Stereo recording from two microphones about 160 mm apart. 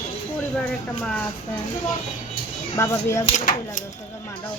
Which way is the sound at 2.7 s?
20° left (ahead or behind).